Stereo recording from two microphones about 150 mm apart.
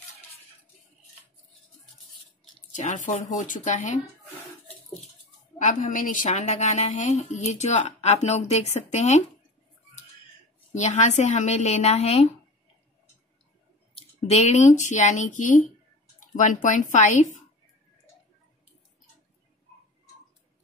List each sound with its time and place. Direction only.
2.7 s speech: 55° left (ahead or behind)
5.6 s a woman's voice: 55° left (ahead or behind)
10.7 s a woman's voice: 50° left (ahead or behind)
13.9 s a woman's voice: 50° left (ahead or behind)